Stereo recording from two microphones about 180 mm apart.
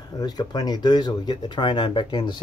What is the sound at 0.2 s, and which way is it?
Speech, 25° left (ahead or behind).